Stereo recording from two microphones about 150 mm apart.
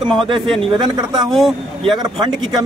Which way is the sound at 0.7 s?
30° right (ahead or behind).